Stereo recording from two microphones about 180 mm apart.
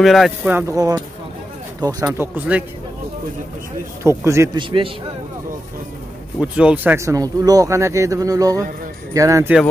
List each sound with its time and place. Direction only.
0.0 s a man's voice: centre (ahead or behind); by 2.0 s 20° right (ahead or behind)
2.0 s speech: 10° right (ahead or behind)
4.0 s speech: 15° right (ahead or behind)
4.6 s a man's voice: 30° right (ahead or behind)
6.4 s speech: 5° right (ahead or behind)